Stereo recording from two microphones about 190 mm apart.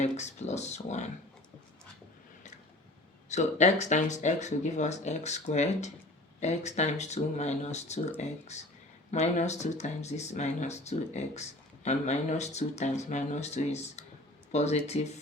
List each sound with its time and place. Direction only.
0.0 s speech: 35° left (ahead or behind)
3.2 s speech: 40° left (ahead or behind)